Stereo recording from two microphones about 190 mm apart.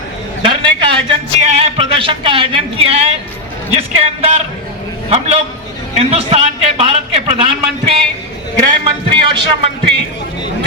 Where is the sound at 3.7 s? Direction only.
35° right (ahead or behind).